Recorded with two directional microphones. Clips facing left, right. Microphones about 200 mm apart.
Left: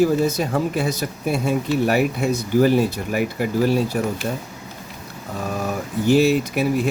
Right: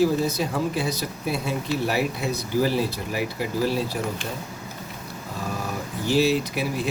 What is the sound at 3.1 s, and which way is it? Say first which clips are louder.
Speech: left 5 dB; 55° left (ahead or behind).